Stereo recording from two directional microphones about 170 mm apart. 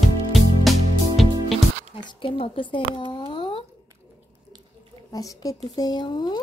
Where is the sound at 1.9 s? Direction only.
30° left (ahead or behind).